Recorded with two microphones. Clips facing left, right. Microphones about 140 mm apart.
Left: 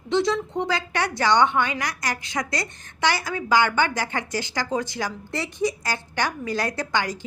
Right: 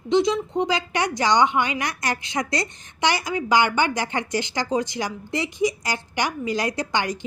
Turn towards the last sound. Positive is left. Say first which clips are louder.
# right 1 dB
turn(degrees=-20)  # may be behind; listen again after turning